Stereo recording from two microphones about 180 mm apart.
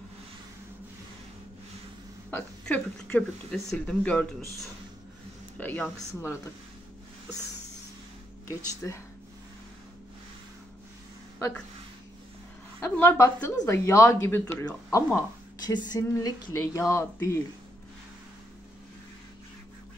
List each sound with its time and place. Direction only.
2.3 s a woman's voice: 10° left (ahead or behind)
5.6 s a woman's voice: 10° left (ahead or behind)
8.5 s a woman's voice: 15° left (ahead or behind)
11.3 s speech: 15° left (ahead or behind)
12.8 s a woman's voice: 10° left (ahead or behind)